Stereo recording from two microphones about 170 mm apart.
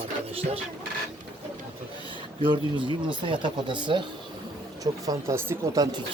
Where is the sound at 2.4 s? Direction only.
30° right (ahead or behind).